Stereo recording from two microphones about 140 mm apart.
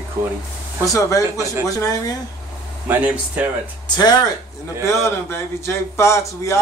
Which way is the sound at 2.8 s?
10° right (ahead or behind).